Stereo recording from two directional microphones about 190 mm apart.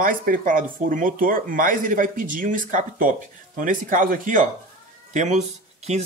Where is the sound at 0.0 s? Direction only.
45° right (ahead or behind).